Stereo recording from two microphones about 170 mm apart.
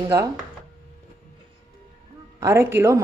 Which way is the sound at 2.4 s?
15° right (ahead or behind).